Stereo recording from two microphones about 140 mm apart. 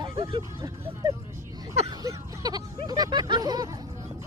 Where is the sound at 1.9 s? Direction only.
25° right (ahead or behind).